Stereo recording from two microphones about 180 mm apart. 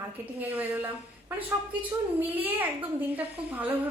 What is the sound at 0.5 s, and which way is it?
Speech, 10° right (ahead or behind).